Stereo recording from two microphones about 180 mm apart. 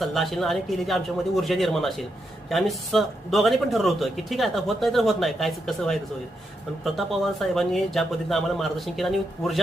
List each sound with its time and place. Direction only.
0.0 s a man's voice: centre (ahead or behind)